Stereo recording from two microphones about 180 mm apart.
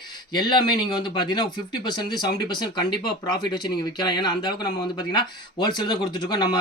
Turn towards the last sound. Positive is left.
turn(degrees=25)  # may be behind; listen again after turning